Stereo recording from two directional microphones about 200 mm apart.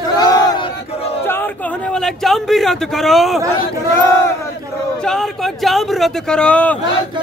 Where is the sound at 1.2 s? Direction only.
10° left (ahead or behind).